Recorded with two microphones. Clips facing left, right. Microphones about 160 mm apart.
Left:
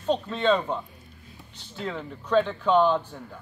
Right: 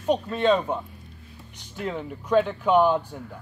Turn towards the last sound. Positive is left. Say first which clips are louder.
# right 1 dB
turn(degrees=-10)  # may be behind; listen again after turning